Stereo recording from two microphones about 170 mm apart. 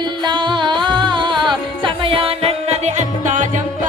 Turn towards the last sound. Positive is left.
turn(degrees=-45)  # may be behind; listen again after turning